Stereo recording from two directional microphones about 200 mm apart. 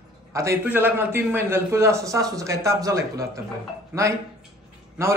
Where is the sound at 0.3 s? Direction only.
15° right (ahead or behind).